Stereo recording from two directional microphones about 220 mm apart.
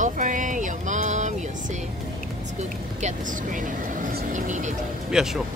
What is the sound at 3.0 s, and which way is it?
Speech, 35° right (ahead or behind).